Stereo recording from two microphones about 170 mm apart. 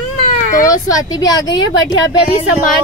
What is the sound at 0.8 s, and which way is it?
Speech, 20° left (ahead or behind).